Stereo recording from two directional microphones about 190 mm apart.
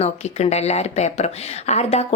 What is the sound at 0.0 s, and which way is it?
Speech, 35° left (ahead or behind).